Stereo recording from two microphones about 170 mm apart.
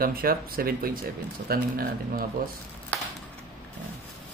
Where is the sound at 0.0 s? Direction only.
60° right (ahead or behind).